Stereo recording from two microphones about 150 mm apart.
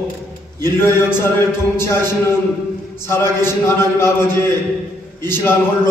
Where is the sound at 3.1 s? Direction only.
15° left (ahead or behind).